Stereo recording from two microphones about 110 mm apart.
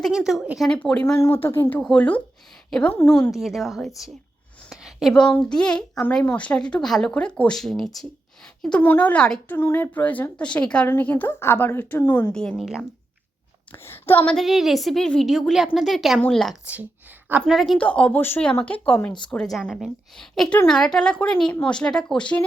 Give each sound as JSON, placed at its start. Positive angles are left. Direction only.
{"t": 0.1, "sound": "a woman's voice", "side_deg": -5}
{"t": 0.7, "sound": "a woman's voice", "side_deg": 10}
{"t": 1.2, "sound": "speech", "side_deg": 20}
{"t": 1.8, "sound": "a woman's voice", "side_deg": 10}
{"t": 2.9, "sound": "speech", "side_deg": 20}
{"t": 3.3, "sound": "a woman's voice", "side_deg": 0}
{"t": 4.7, "sound": "a sound", "side_deg": -5}
{"t": 5.1, "sound": "a woman's voice", "side_deg": 5}
{"t": 8.8, "sound": "a woman's voice", "side_deg": 15}
{"t": 9.6, "sound": "a woman's voice", "side_deg": 20}
{"t": 12.0, "sound": "speech", "side_deg": 30}
{"t": 12.3, "sound": "a woman's voice", "side_deg": 5}
{"t": 13.7, "sound": "speech", "side_deg": 20}
{"t": 14.3, "sound": "a woman's voice", "side_deg": 0}